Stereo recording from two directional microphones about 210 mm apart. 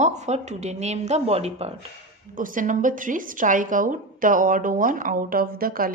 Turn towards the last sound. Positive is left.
turn(degrees=-45)  # may be behind; listen again after turning